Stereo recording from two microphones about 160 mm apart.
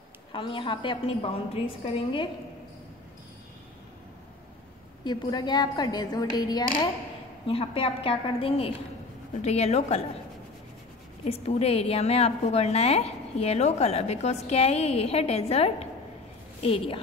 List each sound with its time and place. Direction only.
0.3 s a woman's voice: 30° left (ahead or behind)
5.0 s a woman's voice: 25° left (ahead or behind)
11.2 s a woman's voice: 40° left (ahead or behind)